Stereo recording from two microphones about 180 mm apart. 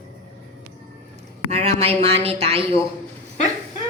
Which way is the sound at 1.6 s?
35° right (ahead or behind).